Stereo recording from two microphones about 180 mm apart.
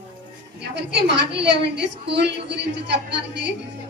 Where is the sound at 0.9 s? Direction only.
70° right (ahead or behind).